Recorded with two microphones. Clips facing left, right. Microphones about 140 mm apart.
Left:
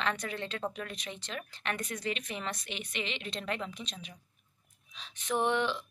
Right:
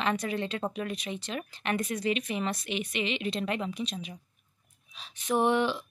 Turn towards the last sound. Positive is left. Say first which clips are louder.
# right 4 dB
turn(degrees=-10)  # may be behind; listen again after turning